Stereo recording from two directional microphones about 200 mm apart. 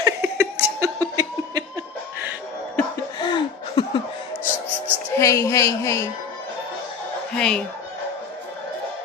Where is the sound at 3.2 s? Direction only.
25° left (ahead or behind).